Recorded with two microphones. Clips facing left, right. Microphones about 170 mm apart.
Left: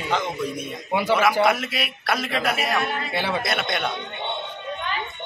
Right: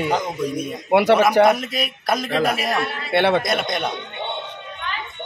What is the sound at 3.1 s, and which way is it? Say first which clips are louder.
Speech: right 13 dB; 70° right (ahead or behind).